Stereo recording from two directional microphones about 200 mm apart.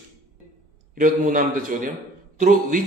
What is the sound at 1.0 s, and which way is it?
Speech, 40° right (ahead or behind).